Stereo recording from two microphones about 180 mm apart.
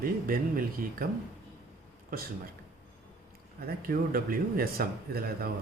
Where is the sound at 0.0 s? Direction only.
50° right (ahead or behind).